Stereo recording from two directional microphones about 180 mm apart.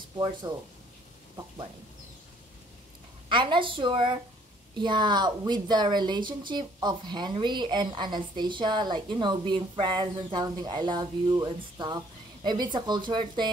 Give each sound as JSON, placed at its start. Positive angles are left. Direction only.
{"t": 0.5, "sound": "speech", "side_deg": -25}
{"t": 3.3, "sound": "speech", "side_deg": -25}